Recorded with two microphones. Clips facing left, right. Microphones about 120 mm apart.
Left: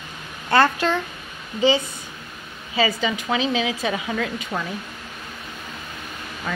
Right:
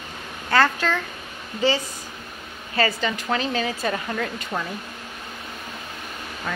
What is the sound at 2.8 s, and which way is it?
Speech, 5° left (ahead or behind).